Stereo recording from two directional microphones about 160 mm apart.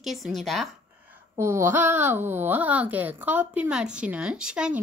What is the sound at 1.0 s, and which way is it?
Speech, 15° right (ahead or behind).